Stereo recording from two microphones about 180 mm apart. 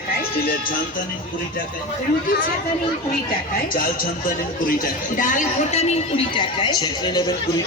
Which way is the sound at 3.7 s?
50° left (ahead or behind).